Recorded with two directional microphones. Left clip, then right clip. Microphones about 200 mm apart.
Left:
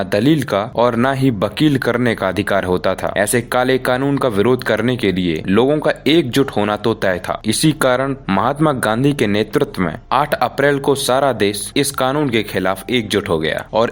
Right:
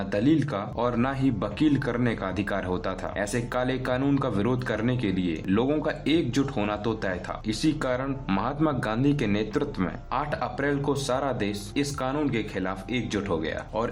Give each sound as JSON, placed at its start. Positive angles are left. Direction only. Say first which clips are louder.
{"t": 0.1, "sound": "speech", "louder": "left 8 dB", "side_deg": 35}